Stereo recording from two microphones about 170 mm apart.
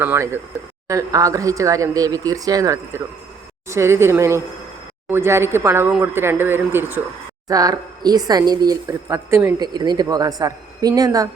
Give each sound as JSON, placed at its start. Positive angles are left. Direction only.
{"t": 0.0, "sound": "speech", "side_deg": -15}
{"t": 9.6, "sound": "speech", "side_deg": -25}